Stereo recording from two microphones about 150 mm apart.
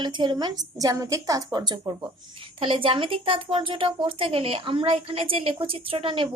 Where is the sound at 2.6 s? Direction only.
35° right (ahead or behind).